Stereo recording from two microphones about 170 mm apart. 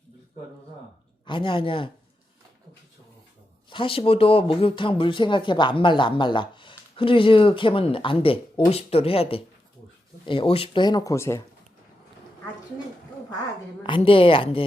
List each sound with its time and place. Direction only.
1.2 s speech: 30° left (ahead or behind)
3.7 s speech: 30° left (ahead or behind)
13.8 s speech: 30° left (ahead or behind)